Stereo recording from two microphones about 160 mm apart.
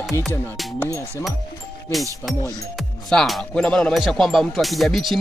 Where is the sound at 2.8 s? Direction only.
Centre (ahead or behind).